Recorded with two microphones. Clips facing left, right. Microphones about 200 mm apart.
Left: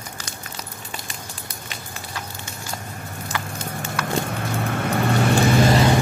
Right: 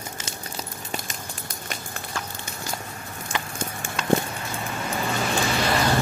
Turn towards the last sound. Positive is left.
turn(degrees=20)  # may be behind; listen again after turning